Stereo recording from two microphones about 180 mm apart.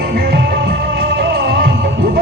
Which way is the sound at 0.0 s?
60° right (ahead or behind).